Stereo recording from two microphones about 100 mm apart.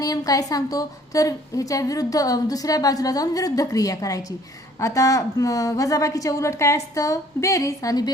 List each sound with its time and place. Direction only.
0.0 s a woman's voice: 35° left (ahead or behind)